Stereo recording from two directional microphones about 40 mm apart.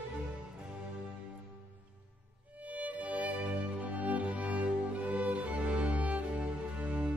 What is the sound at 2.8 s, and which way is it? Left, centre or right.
Music, right.